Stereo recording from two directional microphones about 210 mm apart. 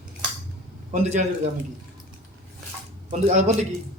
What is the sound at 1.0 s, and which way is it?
Speech, 30° right (ahead or behind).